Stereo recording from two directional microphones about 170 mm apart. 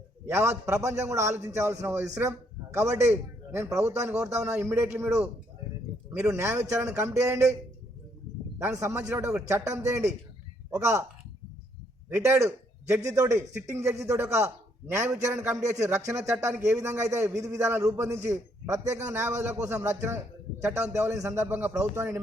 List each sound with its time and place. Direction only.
0.3 s a man's voice: 15° right (ahead or behind)
6.1 s speech: 15° right (ahead or behind)
8.5 s speech: 20° right (ahead or behind)
12.0 s a man's voice: 15° right (ahead or behind)